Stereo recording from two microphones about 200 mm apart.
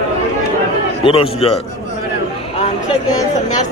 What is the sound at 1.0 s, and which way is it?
Speech, 30° left (ahead or behind).